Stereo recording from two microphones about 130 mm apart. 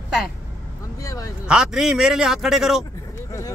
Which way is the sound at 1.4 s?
5° right (ahead or behind).